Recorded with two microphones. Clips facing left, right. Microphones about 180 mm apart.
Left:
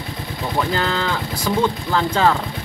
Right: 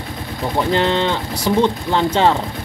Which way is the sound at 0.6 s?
25° right (ahead or behind).